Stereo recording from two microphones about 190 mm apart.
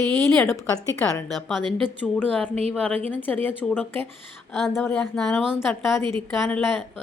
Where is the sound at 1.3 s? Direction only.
Centre (ahead or behind).